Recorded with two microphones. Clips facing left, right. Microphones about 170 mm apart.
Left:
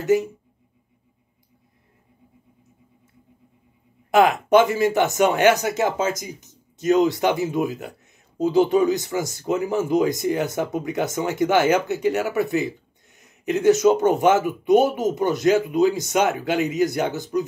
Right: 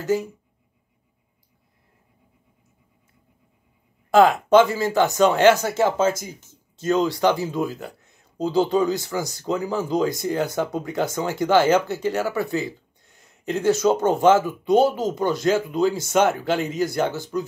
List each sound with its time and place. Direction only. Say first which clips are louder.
0.0 s speech: left 4 dB; 20° left (ahead or behind)
4.1 s speech: right 1 dB; 20° left (ahead or behind)